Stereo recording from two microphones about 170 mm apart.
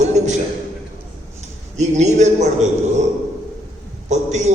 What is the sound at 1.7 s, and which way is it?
Speech, 40° right (ahead or behind).